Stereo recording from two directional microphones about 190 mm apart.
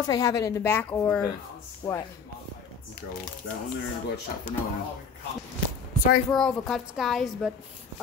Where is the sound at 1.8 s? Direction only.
20° left (ahead or behind).